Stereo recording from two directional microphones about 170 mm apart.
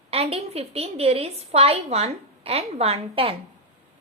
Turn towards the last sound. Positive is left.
turn(degrees=-35)  # may be behind; listen again after turning